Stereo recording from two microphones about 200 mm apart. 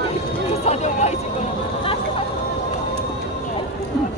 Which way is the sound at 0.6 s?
35° left (ahead or behind).